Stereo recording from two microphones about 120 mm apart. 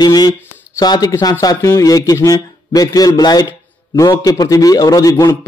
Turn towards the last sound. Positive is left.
turn(degrees=30)  # may be behind; listen again after turning